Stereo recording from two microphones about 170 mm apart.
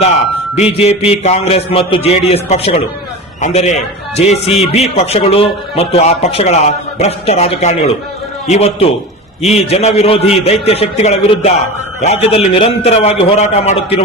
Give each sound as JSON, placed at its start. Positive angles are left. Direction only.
{"t": 0.5, "sound": "a man's voice", "side_deg": 35}